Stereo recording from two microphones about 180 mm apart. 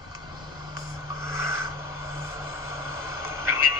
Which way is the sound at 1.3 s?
15° right (ahead or behind).